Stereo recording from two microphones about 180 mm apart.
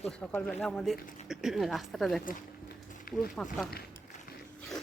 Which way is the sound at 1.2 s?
Centre (ahead or behind).